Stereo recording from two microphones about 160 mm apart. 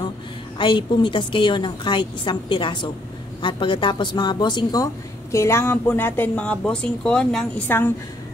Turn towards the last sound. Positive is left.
turn(degrees=10)  # may be behind; listen again after turning